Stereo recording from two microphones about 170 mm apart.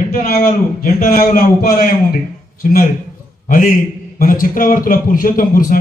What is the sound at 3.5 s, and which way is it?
A man's voice, 55° left (ahead or behind).